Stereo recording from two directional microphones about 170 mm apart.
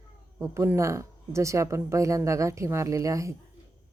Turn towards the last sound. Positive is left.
turn(degrees=-20)  # may be behind; listen again after turning